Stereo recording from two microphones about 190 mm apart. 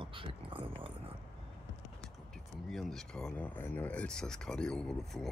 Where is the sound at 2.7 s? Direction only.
Centre (ahead or behind).